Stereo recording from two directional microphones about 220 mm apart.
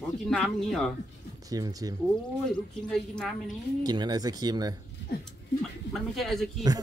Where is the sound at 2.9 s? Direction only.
Centre (ahead or behind).